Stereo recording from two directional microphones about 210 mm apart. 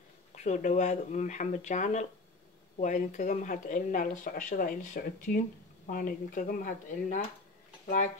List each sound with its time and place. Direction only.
0.4 s speech: 35° left (ahead or behind)